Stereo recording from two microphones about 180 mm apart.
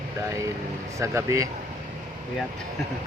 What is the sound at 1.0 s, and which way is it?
Speech, 15° right (ahead or behind).